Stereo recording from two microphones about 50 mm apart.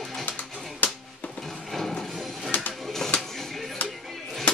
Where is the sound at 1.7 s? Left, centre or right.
Centre.